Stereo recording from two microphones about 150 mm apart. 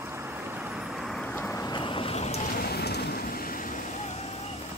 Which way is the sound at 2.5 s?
90° left.